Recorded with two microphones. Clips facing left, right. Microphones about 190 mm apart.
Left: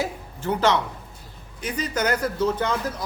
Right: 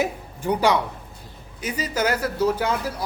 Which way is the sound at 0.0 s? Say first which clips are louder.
Right 3 dB; 15° right (ahead or behind).